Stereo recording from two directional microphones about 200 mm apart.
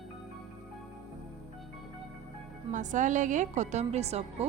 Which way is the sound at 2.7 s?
40° right (ahead or behind).